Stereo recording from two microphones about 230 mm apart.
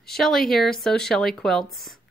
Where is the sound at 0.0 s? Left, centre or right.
Centre.